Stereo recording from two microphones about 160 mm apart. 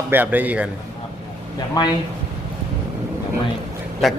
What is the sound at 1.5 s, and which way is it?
Speech, 25° left (ahead or behind).